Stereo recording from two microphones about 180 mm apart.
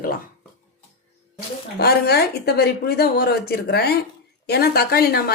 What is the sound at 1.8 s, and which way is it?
A woman's voice, 60° left (ahead or behind).